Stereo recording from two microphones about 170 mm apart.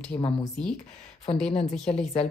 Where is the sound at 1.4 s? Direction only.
40° left (ahead or behind).